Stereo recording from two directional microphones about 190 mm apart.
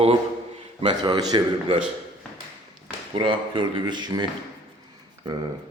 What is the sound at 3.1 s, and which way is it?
Speech, 25° right (ahead or behind).